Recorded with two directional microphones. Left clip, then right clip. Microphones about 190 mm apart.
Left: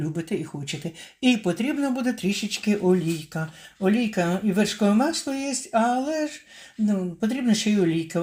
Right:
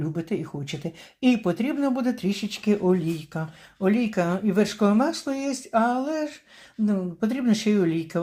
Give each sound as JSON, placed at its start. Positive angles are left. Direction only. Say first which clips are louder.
{"t": 0.0, "sound": "speech", "louder": "even", "side_deg": -5}